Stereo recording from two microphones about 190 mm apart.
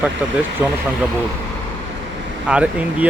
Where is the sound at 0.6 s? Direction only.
10° right (ahead or behind).